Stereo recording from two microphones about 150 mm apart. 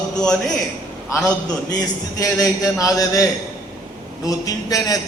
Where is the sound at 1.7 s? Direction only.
25° left (ahead or behind).